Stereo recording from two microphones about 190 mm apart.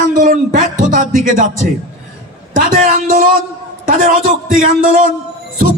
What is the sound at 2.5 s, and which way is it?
Speech, 45° right (ahead or behind).